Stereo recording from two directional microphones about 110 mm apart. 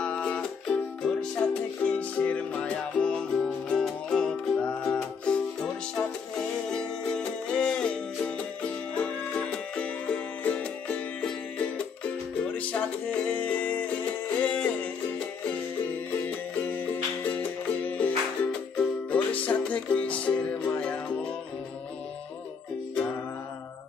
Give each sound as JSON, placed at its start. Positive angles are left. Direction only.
{"t": 0.0, "sound": "music", "side_deg": 10}
{"t": 16.1, "sound": "music", "side_deg": 15}